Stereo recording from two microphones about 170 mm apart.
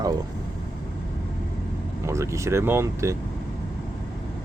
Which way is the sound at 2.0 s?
15° right (ahead or behind).